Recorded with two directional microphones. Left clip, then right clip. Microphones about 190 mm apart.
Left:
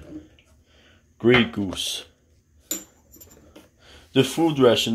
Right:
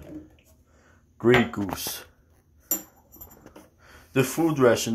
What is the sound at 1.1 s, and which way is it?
Speech, 30° left (ahead or behind).